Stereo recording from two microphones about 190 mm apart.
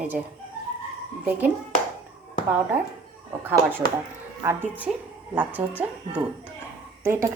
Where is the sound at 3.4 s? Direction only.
10° right (ahead or behind).